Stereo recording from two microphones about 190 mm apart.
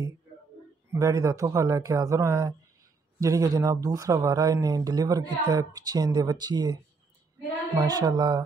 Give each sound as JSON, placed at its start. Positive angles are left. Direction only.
{"t": 0.9, "sound": "speech", "side_deg": -15}